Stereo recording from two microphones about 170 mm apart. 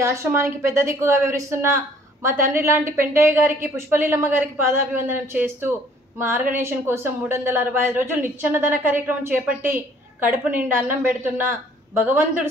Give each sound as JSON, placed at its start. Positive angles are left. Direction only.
{"t": 0.0, "sound": "a woman's voice", "side_deg": -15}